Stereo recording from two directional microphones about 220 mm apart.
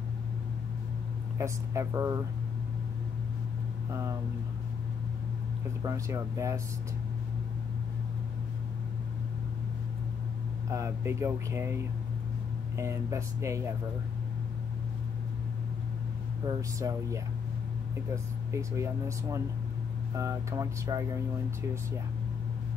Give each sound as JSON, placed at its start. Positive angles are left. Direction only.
{"t": 1.4, "sound": "speech", "side_deg": -15}
{"t": 3.9, "sound": "speech", "side_deg": -15}
{"t": 5.8, "sound": "speech", "side_deg": -15}
{"t": 10.7, "sound": "speech", "side_deg": -15}
{"t": 16.4, "sound": "speech", "side_deg": -15}